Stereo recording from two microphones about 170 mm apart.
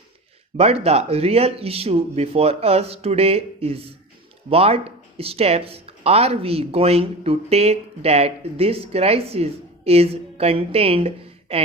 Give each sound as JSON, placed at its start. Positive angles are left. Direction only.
{"t": 0.5, "sound": "speech", "side_deg": -35}